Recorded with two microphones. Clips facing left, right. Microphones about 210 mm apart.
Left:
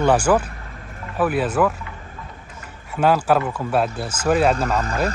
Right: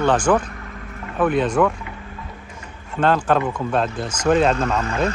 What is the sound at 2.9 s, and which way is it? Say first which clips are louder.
Speech: left 1 dB; 10° left (ahead or behind).